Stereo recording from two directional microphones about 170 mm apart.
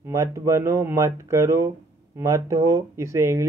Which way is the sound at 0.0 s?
20° right (ahead or behind).